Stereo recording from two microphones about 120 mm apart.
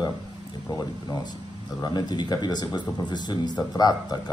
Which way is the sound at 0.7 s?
30° left (ahead or behind).